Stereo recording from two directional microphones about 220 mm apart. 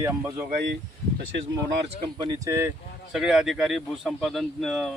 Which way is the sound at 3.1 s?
5° right (ahead or behind).